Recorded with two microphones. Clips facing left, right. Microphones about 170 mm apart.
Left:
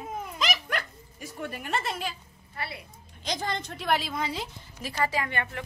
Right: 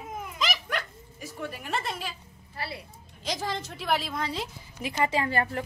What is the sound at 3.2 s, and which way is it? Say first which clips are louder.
A woman's voice: even; 5° right (ahead or behind).